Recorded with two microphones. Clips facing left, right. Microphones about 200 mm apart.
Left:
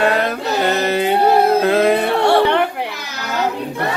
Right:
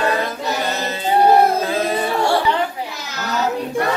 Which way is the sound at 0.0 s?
65° left (ahead or behind).